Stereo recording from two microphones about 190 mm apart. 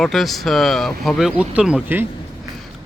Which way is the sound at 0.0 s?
Centre (ahead or behind).